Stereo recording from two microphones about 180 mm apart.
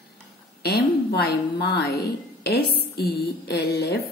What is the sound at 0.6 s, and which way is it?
A woman's voice, 60° left (ahead or behind).